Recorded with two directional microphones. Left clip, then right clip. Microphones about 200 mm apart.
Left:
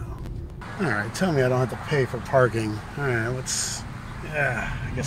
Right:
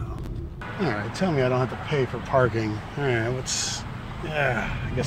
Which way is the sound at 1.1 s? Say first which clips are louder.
Even; 20° left (ahead or behind).